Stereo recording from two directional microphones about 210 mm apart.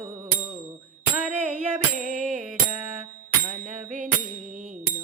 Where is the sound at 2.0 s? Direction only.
40° right (ahead or behind).